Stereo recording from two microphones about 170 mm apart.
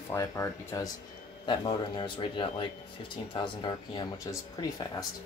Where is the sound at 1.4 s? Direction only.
30° left (ahead or behind).